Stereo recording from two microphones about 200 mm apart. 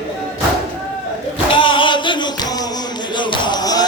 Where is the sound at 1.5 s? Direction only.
25° left (ahead or behind).